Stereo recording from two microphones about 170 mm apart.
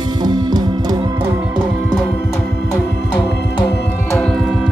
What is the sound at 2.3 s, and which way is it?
Organ, 5° left (ahead or behind).